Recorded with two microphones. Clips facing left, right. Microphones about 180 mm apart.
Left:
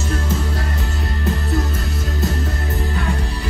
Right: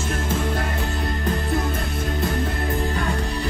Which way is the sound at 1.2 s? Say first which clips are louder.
Left 3 dB; 50° right (ahead or behind).